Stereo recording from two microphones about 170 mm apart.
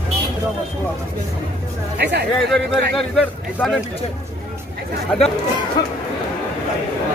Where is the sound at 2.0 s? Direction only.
75° right (ahead or behind).